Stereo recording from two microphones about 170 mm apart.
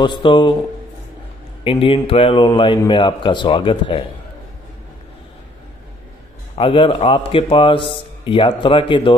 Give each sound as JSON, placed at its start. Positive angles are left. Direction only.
{"t": 0.0, "sound": "speech", "side_deg": 30}
{"t": 1.6, "sound": "speech", "side_deg": 30}
{"t": 6.5, "sound": "speech", "side_deg": 30}